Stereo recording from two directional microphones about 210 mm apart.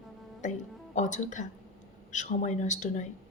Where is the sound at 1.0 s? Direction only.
35° left (ahead or behind).